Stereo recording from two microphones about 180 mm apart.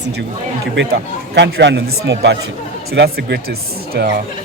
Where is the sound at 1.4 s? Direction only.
70° right (ahead or behind).